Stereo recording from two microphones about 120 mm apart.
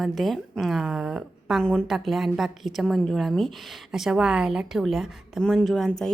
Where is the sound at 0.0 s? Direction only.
Centre (ahead or behind).